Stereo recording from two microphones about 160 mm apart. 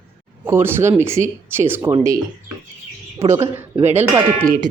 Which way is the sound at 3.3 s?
15° right (ahead or behind).